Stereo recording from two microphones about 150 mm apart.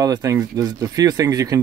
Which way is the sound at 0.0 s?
25° right (ahead or behind).